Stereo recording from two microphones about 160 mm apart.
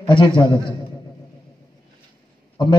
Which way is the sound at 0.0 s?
30° left (ahead or behind).